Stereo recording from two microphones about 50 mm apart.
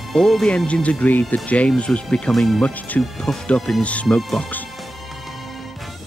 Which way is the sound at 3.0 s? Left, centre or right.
Centre.